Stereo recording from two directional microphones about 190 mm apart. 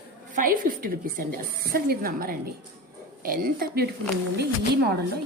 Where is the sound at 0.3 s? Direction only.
45° right (ahead or behind).